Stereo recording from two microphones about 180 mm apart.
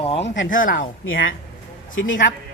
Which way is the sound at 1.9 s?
90° left.